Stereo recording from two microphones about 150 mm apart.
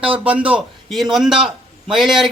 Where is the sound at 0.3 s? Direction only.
10° right (ahead or behind).